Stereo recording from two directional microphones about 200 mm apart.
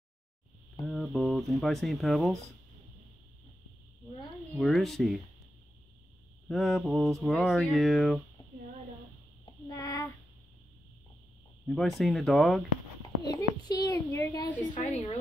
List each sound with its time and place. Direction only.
0.8 s speech: centre (ahead or behind)
4.6 s speech: centre (ahead or behind)
6.5 s speech: centre (ahead or behind)
9.7 s child singing: 15° left (ahead or behind)
11.6 s speech: centre (ahead or behind)
13.3 s a woman's voice: 20° left (ahead or behind)